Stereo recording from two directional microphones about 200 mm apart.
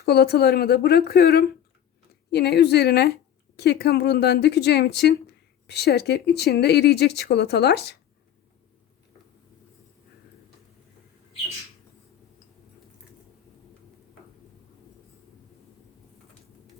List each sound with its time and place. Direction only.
0.0 s speech: 55° left (ahead or behind)